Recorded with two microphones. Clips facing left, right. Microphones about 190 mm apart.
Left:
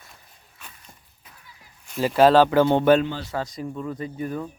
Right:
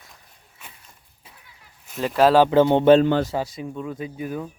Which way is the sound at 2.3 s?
20° right (ahead or behind).